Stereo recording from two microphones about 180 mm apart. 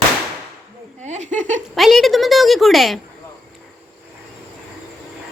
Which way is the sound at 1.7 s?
Centre (ahead or behind).